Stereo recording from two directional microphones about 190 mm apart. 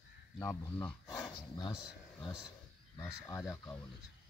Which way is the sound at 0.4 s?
15° left (ahead or behind).